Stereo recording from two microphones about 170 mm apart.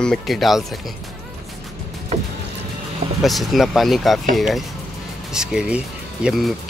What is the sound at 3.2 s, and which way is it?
Speech, centre (ahead or behind).